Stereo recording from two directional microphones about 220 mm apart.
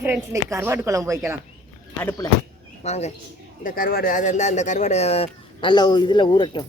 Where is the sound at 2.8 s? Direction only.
30° left (ahead or behind).